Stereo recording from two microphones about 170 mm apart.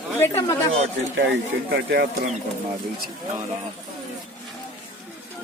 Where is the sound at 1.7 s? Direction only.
75° right (ahead or behind).